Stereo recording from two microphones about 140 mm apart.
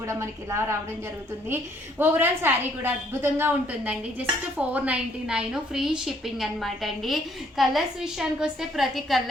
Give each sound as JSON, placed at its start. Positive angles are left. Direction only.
{"t": 0.1, "sound": "a woman's voice", "side_deg": -20}